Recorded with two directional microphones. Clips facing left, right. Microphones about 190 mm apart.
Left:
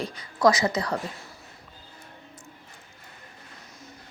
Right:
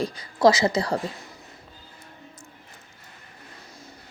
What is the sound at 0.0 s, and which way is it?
Speech, 35° right (ahead or behind).